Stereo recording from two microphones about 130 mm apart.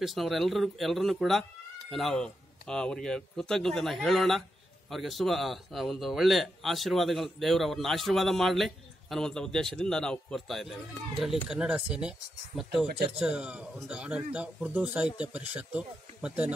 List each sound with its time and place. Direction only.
0.0 s a man's voice: centre (ahead or behind)